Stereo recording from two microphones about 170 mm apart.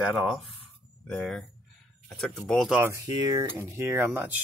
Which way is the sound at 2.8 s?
20° right (ahead or behind).